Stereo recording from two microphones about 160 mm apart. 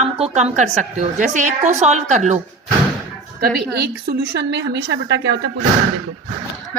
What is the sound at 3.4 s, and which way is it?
A woman's voice, 85° right.